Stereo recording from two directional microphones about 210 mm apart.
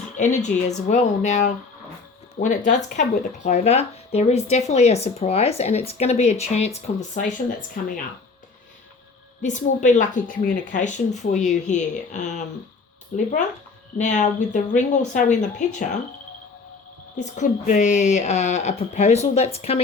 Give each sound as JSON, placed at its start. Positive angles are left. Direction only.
{"t": 0.2, "sound": "speech", "side_deg": 35}
{"t": 9.4, "sound": "speech", "side_deg": 35}
{"t": 17.3, "sound": "speech", "side_deg": 35}